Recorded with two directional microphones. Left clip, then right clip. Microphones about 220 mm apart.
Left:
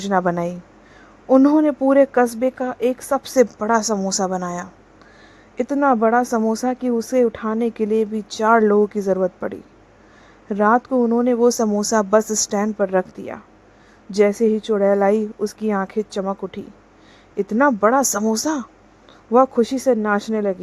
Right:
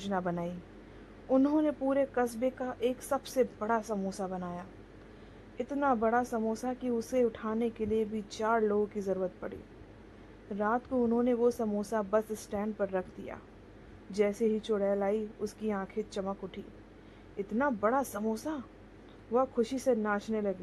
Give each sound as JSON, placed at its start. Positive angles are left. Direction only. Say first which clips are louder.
{"t": 0.0, "sound": "speech", "louder": "left 15 dB", "side_deg": 40}